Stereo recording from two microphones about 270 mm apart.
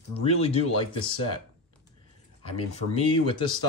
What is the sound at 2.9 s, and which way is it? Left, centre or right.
Speech, centre.